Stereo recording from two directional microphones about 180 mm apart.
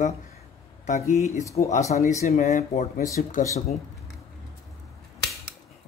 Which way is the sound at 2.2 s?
40° left (ahead or behind).